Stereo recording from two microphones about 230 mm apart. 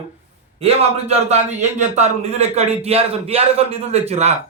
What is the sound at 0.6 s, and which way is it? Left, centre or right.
Speech, right.